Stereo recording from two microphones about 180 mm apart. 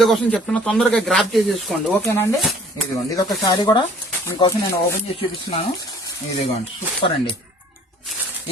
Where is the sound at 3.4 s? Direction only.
25° left (ahead or behind).